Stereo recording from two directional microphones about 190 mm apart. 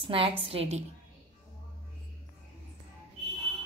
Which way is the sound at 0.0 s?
30° right (ahead or behind).